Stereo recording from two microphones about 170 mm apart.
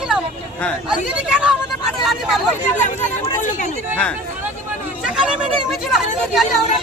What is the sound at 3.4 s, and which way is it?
Chatter, 45° left (ahead or behind).